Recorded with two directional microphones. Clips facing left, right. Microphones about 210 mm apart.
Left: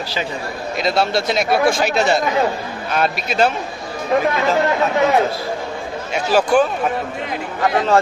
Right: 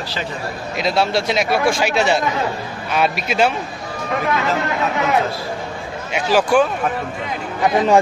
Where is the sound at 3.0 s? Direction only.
10° right (ahead or behind).